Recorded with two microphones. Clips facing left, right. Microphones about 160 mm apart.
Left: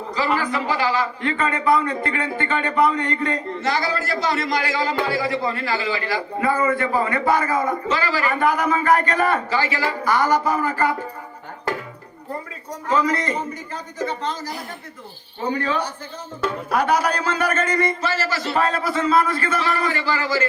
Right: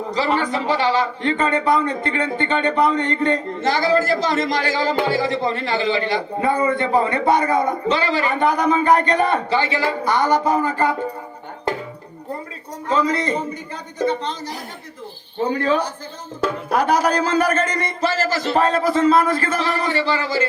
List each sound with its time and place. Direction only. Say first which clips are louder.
0.2 s a man's voice: right 1 dB; 30° right (ahead or behind)
10.2 s speech: right 1 dB; 10° left (ahead or behind)
10.4 s a man's voice: right 2 dB; 30° right (ahead or behind)
12.9 s a man's voice: right 1 dB; 30° right (ahead or behind)
13.1 s a man's voice: right 3 dB; 15° right (ahead or behind)
15.4 s a man's voice: right 3 dB; 40° right (ahead or behind); by 20.4 s 20° right (ahead or behind)